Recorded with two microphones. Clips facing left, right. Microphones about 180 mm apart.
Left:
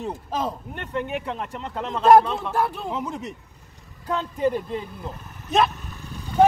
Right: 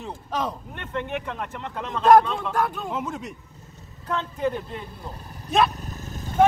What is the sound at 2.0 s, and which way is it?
A man's voice, 5° left (ahead or behind).